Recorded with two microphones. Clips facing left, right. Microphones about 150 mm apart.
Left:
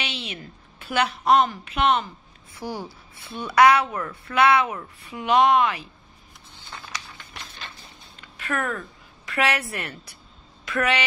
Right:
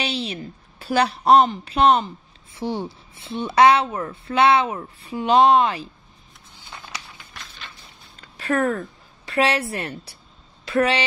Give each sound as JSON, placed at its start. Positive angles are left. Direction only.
{"t": 0.0, "sound": "a sound", "side_deg": -35}
{"t": 1.5, "sound": "speech", "side_deg": -35}
{"t": 8.2, "sound": "a woman's voice", "side_deg": -35}